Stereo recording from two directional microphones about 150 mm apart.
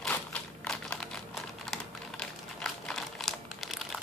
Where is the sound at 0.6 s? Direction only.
5° left (ahead or behind).